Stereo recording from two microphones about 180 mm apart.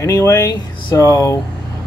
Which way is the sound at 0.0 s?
15° left (ahead or behind).